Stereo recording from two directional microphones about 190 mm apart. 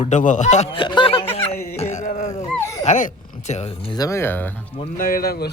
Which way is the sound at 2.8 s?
40° left (ahead or behind).